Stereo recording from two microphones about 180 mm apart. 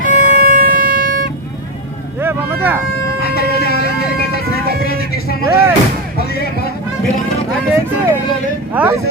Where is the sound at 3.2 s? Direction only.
60° left (ahead or behind).